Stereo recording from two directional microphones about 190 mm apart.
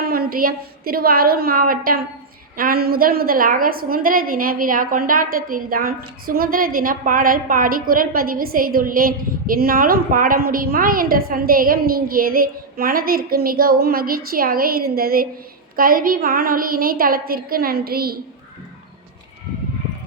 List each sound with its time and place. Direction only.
0.0 s a woman's voice: 50° right (ahead or behind)